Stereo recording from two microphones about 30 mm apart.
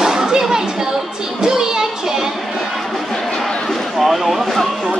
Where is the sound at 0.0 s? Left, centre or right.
Right.